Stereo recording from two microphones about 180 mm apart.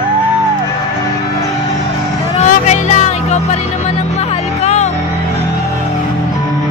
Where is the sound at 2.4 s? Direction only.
40° left (ahead or behind).